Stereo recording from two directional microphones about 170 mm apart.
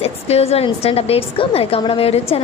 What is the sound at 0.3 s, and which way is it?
A woman's voice, 35° left (ahead or behind).